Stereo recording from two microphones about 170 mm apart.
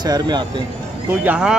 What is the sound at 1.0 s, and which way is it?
Speech, 10° right (ahead or behind).